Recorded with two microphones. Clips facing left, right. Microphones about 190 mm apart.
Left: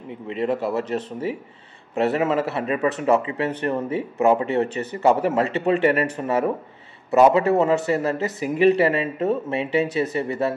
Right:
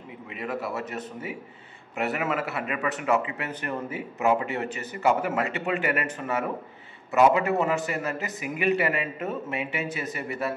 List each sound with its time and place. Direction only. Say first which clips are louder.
0.3 s speech: left 8 dB; 30° left (ahead or behind)